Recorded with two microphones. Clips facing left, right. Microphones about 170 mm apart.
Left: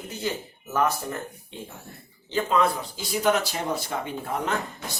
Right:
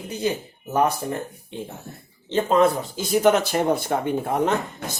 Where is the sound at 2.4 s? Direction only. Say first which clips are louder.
Right 5 dB; 40° right (ahead or behind).